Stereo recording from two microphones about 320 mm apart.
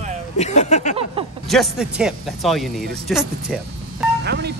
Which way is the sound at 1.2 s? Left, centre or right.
Centre.